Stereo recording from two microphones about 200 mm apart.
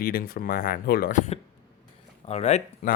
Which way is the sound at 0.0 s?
50° left (ahead or behind).